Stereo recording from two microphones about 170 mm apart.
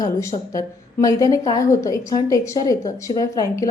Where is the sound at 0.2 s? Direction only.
20° left (ahead or behind).